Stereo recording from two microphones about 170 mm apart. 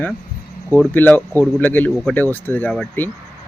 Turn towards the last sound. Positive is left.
turn(degrees=10)  # may be behind; listen again after turning